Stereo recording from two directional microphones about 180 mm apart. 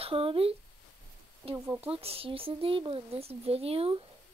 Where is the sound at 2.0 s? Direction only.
30° right (ahead or behind).